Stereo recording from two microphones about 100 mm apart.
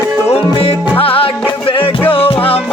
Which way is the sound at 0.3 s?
75° left (ahead or behind).